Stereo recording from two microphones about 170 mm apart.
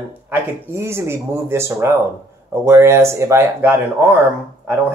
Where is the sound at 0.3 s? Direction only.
15° right (ahead or behind).